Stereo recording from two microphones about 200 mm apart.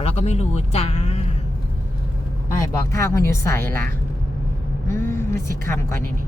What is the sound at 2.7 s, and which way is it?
Speech, 15° left (ahead or behind).